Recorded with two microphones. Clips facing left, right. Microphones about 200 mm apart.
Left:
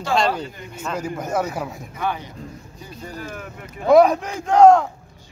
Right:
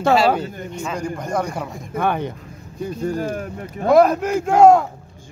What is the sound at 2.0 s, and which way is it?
Speech, 55° right (ahead or behind).